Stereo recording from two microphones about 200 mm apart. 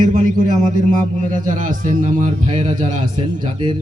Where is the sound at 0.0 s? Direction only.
40° right (ahead or behind).